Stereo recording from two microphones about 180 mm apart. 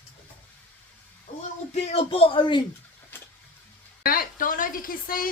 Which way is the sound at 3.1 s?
10° left (ahead or behind).